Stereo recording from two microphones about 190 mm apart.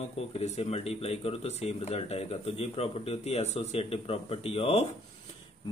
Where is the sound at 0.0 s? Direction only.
30° left (ahead or behind).